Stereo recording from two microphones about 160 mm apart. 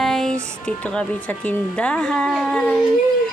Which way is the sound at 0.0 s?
Centre (ahead or behind).